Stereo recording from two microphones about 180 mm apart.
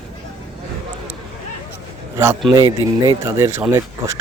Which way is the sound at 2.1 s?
15° right (ahead or behind).